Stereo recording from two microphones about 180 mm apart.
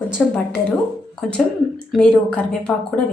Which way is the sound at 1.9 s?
5° left (ahead or behind).